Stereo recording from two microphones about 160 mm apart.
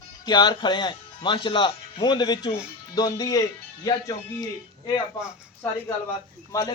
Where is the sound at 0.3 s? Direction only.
25° left (ahead or behind).